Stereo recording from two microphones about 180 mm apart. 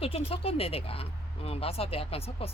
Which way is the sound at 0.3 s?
30° left (ahead or behind).